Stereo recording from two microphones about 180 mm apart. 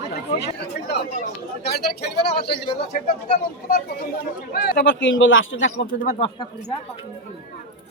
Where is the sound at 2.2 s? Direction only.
65° left (ahead or behind).